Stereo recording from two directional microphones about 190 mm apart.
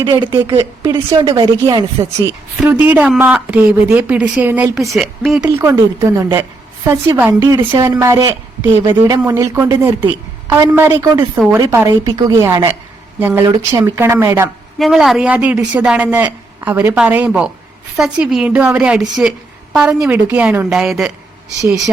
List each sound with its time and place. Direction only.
0.0 s a woman's voice: 20° right (ahead or behind)
2.2 s a woman's voice: 10° right (ahead or behind)
5.4 s a woman's voice: 15° right (ahead or behind)
14.8 s a woman's voice: centre (ahead or behind)